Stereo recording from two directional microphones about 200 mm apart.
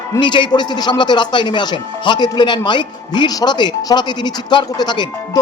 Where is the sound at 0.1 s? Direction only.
25° left (ahead or behind).